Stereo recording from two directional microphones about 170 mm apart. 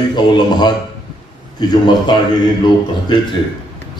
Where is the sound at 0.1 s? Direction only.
25° left (ahead or behind).